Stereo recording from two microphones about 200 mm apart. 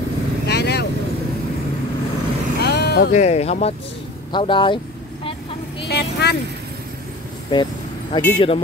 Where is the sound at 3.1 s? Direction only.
35° left (ahead or behind).